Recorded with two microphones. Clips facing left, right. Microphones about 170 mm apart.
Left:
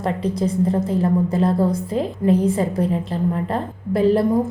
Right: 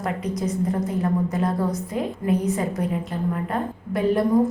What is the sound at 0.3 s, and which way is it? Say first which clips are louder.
A woman's voice: left 4 dB; 30° left (ahead or behind).